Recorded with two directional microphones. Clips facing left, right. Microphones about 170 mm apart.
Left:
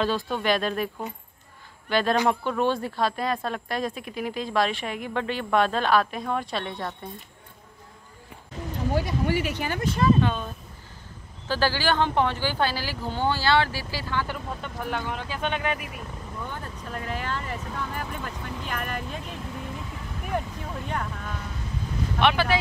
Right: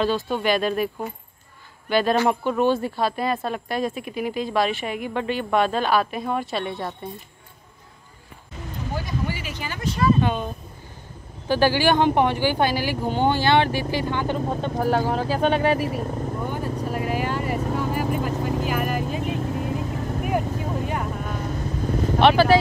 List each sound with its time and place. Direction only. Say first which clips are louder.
0.0 s speech: right 3 dB; centre (ahead or behind)
1.9 s speech: right 3 dB; 5° right (ahead or behind)
8.9 s speech: left 3 dB; 65° left (ahead or behind)
10.2 s speech: right 3 dB; 15° right (ahead or behind)
14.4 s speech: right 10 dB; 40° right (ahead or behind)
16.4 s speech: right 7 dB; 15° right (ahead or behind)
16.9 s vehicle: right 4 dB; 10° right (ahead or behind)
17.6 s vehicle: right 9 dB; 45° right (ahead or behind)
18.7 s vehicle: right 7 dB; 5° right (ahead or behind)
19.3 s vehicle: right 9 dB; 45° right (ahead or behind)
20.9 s speech: right 4 dB; 15° right (ahead or behind)
21.5 s vehicle: right 7 dB; 50° right (ahead or behind)
22.2 s speech: right 7 dB; 35° right (ahead or behind)